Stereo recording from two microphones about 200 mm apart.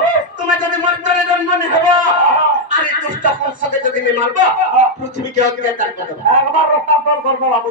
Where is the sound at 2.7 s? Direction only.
40° right (ahead or behind).